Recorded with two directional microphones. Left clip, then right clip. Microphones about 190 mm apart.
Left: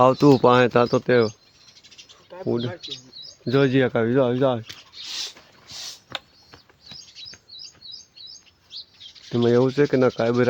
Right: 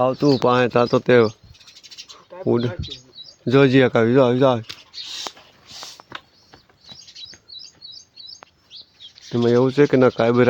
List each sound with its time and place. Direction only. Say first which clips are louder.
0.0 s speech: left 2 dB; 15° left (ahead or behind)
0.4 s speech: even; centre (ahead or behind); by 1.3 s 15° right (ahead or behind)
2.3 s a sound: right 2 dB; 10° left (ahead or behind)
3.4 s speech: right 5 dB; 20° right (ahead or behind)
9.3 s speech: right 2 dB; 5° right (ahead or behind)